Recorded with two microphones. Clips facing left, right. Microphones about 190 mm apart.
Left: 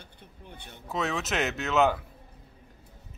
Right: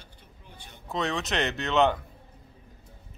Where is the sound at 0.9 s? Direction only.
5° left (ahead or behind).